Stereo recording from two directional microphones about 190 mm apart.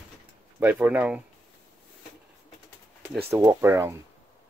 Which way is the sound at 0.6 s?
10° right (ahead or behind).